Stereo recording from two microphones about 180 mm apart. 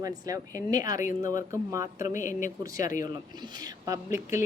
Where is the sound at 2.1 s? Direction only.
45° left (ahead or behind).